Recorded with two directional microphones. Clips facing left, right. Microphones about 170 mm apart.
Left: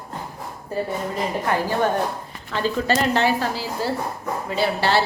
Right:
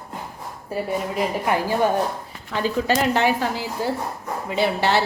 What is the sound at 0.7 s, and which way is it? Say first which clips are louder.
A woman's voice: right 1 dB; 10° right (ahead or behind).